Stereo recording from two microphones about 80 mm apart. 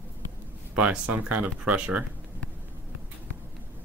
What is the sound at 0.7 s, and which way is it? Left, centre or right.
Speech, centre.